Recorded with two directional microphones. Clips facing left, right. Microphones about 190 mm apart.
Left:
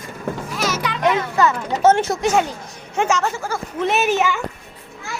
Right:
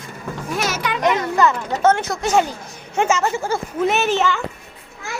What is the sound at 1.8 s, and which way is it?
Speech, 20° left (ahead or behind).